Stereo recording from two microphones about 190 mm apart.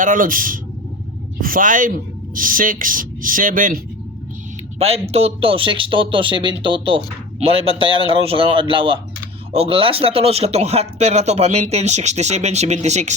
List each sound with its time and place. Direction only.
0.0 s speech: 45° right (ahead or behind)
4.8 s speech: 35° right (ahead or behind)